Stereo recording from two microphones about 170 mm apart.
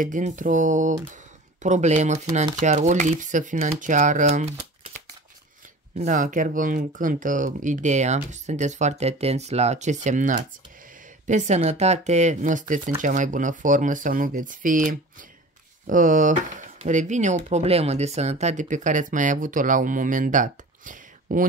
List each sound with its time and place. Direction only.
0.0 s speech: 50° right (ahead or behind)